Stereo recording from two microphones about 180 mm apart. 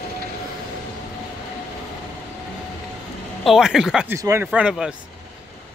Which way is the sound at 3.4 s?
Centre (ahead or behind).